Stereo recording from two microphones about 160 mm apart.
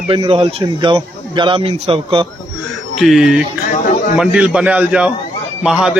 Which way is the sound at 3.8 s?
60° left (ahead or behind).